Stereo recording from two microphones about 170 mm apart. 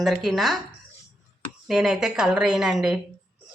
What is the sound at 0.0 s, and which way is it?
Speech, centre (ahead or behind).